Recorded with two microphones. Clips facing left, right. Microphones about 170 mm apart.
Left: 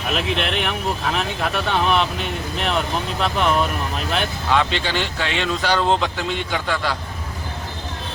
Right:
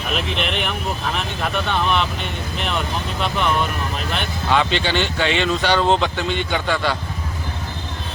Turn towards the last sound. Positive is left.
turn(degrees=0)  # may be behind; listen again after turning